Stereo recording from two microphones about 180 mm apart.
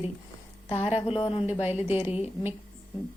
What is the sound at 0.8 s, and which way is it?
Speech, 35° left (ahead or behind).